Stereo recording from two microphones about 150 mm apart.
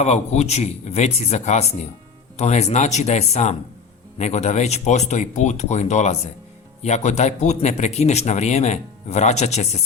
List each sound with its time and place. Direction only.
0.0 s a man's voice: 45° left (ahead or behind)